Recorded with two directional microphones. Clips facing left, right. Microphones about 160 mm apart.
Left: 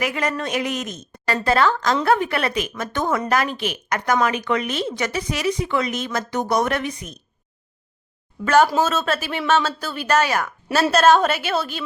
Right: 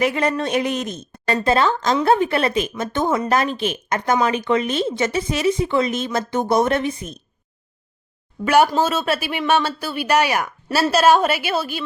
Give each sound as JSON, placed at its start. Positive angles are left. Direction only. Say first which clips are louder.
{"t": 0.0, "sound": "a woman's voice", "louder": "right 4 dB", "side_deg": -30}
{"t": 8.4, "sound": "speech", "louder": "right 1 dB", "side_deg": -15}